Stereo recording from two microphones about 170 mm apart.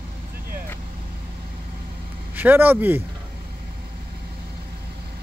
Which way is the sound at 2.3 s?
10° right (ahead or behind).